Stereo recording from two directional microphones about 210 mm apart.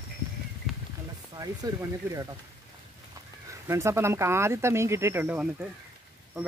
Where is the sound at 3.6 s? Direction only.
15° right (ahead or behind).